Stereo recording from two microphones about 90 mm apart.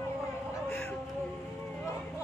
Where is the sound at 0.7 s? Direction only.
20° left (ahead or behind).